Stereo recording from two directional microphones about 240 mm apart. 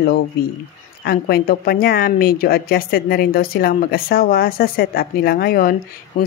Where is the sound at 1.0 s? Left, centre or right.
Left.